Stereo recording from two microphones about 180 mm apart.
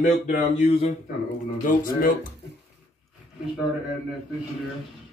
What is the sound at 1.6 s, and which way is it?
Speech, 50° left (ahead or behind).